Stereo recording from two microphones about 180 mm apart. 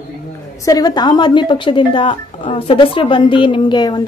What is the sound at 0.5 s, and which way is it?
Speech, 20° left (ahead or behind).